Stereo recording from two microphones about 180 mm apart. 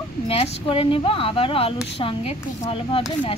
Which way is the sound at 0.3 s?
30° left (ahead or behind).